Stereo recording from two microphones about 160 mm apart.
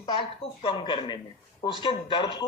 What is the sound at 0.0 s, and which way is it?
A man's voice, 30° left (ahead or behind).